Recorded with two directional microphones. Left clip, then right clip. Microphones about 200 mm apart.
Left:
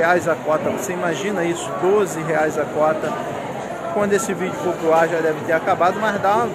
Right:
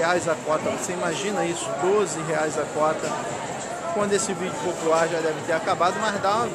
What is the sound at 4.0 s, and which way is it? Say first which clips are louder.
Speech: left 5 dB; 10° right (ahead or behind).